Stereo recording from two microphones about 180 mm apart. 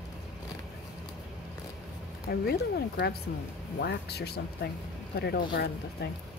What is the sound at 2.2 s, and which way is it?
Speech, 60° left (ahead or behind).